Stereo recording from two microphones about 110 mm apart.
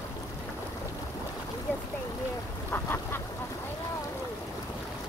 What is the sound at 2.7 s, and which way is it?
Duck, 20° left (ahead or behind).